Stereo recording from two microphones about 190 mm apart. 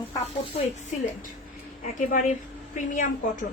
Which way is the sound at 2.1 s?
40° left (ahead or behind).